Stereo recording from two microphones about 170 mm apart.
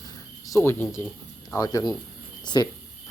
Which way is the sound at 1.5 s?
20° left (ahead or behind).